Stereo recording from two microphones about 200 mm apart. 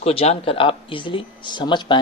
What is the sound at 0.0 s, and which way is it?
Speech, 30° left (ahead or behind).